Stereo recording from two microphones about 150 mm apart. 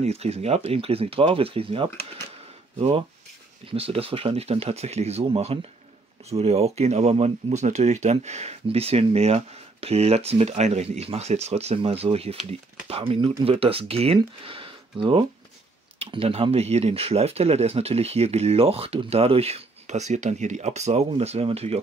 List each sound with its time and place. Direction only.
0.0 s speech: 45° right (ahead or behind)
3.7 s speech: 40° right (ahead or behind)